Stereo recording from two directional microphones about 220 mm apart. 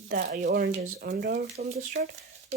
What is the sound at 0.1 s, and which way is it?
Speech, 45° right (ahead or behind).